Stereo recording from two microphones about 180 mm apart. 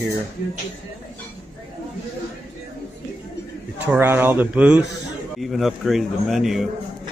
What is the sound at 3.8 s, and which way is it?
A man's voice, 10° right (ahead or behind).